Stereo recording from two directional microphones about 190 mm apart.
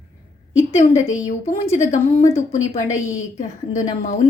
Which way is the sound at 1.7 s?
40° left (ahead or behind).